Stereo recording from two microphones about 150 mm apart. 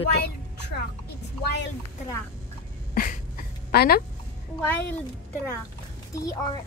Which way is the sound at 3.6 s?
90° left.